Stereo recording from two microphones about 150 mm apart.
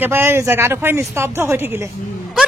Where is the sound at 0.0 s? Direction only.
15° right (ahead or behind).